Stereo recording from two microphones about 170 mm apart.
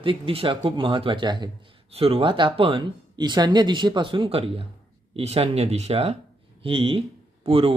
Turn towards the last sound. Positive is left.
turn(degrees=-35)  # may be behind; listen again after turning